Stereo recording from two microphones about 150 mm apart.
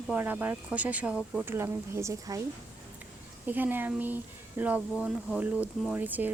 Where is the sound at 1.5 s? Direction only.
15° right (ahead or behind).